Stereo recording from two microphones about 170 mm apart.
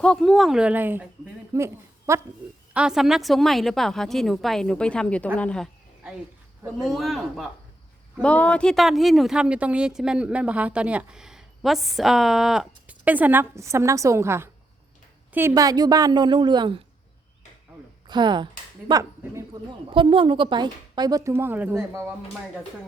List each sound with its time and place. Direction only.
0.0 s a woman's voice: 5° left (ahead or behind); by 2.2 s 15° right (ahead or behind)
2.7 s speech: 5° right (ahead or behind)
6.7 s a woman's voice: centre (ahead or behind); by 16.8 s 25° right (ahead or behind)
18.1 s a woman's voice: 25° right (ahead or behind)